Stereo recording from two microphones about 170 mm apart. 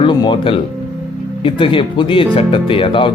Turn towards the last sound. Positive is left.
turn(degrees=30)  # may be behind; listen again after turning